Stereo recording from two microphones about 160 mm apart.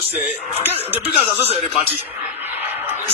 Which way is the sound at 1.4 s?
40° left (ahead or behind).